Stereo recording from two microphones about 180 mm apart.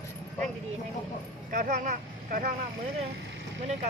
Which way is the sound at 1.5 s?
50° right (ahead or behind).